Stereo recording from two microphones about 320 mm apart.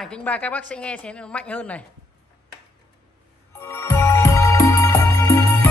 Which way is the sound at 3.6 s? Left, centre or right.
Centre.